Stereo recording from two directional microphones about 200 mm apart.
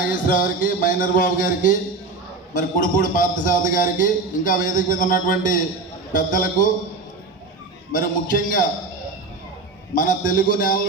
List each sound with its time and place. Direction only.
0.1 s a man's voice: 40° left (ahead or behind)
7.9 s a man's voice: 40° left (ahead or behind)
9.9 s a man's voice: 40° left (ahead or behind)